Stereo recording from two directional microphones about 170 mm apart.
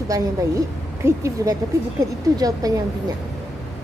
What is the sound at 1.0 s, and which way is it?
Speech, 20° right (ahead or behind).